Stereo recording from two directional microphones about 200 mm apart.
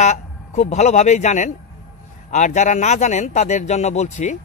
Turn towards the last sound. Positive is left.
turn(degrees=35)  # may be behind; listen again after turning